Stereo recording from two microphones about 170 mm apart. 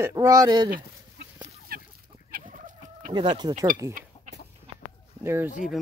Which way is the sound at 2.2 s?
55° right (ahead or behind).